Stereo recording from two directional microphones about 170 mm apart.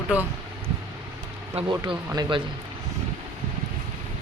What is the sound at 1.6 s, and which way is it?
Speech, 30° right (ahead or behind).